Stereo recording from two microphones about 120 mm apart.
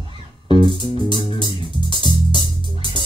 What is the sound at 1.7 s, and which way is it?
Music, 40° left (ahead or behind).